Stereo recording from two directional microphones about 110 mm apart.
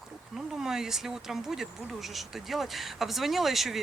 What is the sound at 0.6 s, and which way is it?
Speech, 5° right (ahead or behind).